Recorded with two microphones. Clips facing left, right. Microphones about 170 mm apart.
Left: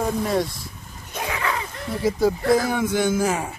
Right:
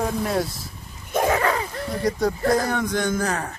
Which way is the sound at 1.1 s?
45° right (ahead or behind).